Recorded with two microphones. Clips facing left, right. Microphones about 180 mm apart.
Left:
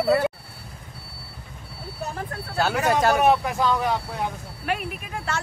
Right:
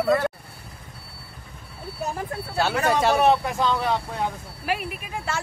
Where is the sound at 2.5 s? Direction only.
Centre (ahead or behind).